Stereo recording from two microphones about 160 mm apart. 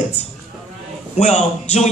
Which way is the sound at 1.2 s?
45° left (ahead or behind).